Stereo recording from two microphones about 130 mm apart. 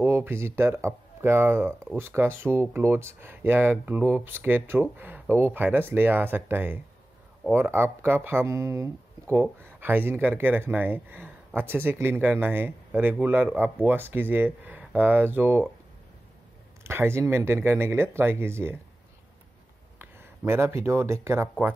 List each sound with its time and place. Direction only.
0.0 s speech: 20° right (ahead or behind)
16.8 s speech: 20° right (ahead or behind)
20.0 s speech: 20° right (ahead or behind)